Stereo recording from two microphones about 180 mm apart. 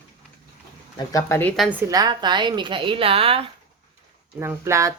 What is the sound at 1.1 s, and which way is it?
Speech, 15° left (ahead or behind).